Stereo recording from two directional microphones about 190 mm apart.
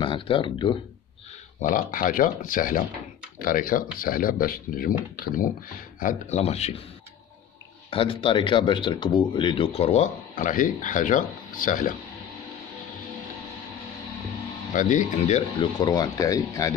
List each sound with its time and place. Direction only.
0.0 s speech: 25° left (ahead or behind)
1.6 s speech: 45° left (ahead or behind)
7.9 s speech: 30° left (ahead or behind)
10.3 s speech: 45° left (ahead or behind)
14.7 s speech: 45° left (ahead or behind)
15.8 s speech: 20° left (ahead or behind)